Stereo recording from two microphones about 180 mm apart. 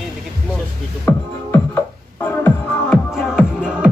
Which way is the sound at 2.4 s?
Centre (ahead or behind).